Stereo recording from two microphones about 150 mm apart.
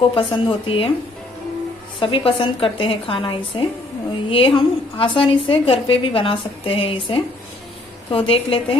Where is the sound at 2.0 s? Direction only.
35° left (ahead or behind).